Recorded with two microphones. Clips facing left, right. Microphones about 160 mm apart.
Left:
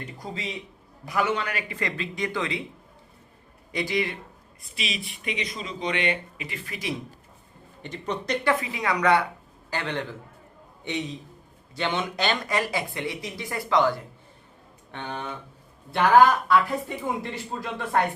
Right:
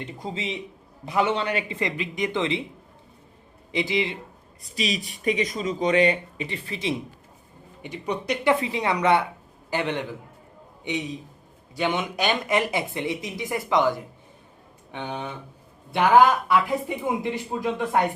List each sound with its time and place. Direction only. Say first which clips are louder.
0.0 s a man's voice: right 3 dB; 25° right (ahead or behind)
3.8 s a man's voice: right 2 dB; 20° right (ahead or behind)
4.6 s speech: right 6 dB; 40° right (ahead or behind)
7.8 s speech: right 2 dB; 10° right (ahead or behind)
8.6 s a man's voice: right 2 dB; 25° right (ahead or behind)
16.5 s speech: even; 15° right (ahead or behind)